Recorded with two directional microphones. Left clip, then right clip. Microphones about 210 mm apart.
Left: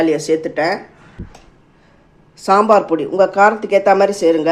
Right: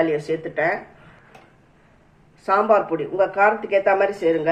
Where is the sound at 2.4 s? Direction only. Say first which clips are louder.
Left 6 dB; 40° left (ahead or behind).